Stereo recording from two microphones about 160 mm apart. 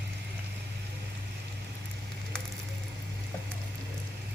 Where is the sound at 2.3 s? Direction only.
5° left (ahead or behind).